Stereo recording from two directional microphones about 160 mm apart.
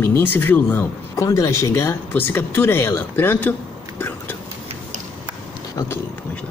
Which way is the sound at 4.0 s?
10° left (ahead or behind).